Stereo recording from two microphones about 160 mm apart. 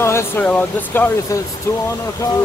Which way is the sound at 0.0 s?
15° left (ahead or behind).